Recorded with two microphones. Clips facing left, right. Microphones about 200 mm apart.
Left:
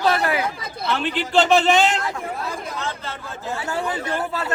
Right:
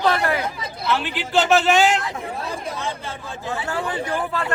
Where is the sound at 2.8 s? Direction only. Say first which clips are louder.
Right 1 dB; 15° right (ahead or behind).